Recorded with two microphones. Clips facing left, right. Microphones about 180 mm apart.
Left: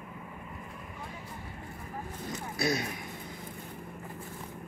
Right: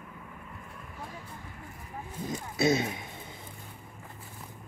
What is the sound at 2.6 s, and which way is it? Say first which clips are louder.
Speech: right 5 dB; 25° right (ahead or behind).